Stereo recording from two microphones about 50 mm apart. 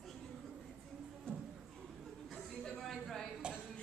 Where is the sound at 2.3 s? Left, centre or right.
Centre.